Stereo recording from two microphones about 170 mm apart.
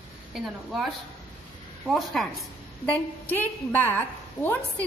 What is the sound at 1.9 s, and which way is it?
Speech, centre (ahead or behind).